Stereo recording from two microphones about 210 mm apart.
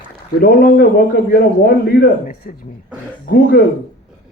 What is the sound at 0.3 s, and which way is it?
A man's voice, 45° left (ahead or behind).